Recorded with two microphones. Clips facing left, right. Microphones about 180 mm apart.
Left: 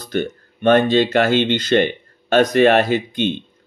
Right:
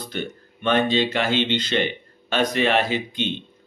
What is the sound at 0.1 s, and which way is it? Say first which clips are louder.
Speech: left 12 dB; 45° left (ahead or behind).